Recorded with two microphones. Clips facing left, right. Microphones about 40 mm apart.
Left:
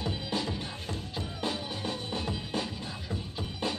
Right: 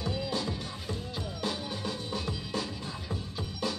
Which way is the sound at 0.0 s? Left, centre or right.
Left.